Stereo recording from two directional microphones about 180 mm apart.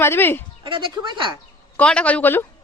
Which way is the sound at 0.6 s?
25° right (ahead or behind).